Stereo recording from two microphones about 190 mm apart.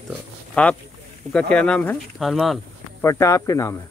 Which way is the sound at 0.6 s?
5° left (ahead or behind).